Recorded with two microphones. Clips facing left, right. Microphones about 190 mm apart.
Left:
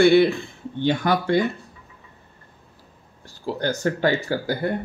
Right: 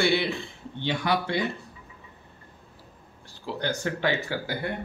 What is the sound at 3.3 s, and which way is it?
Speech, 45° left (ahead or behind).